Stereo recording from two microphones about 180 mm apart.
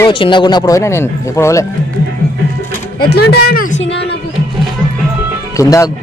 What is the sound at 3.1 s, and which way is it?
Speech, 65° left (ahead or behind).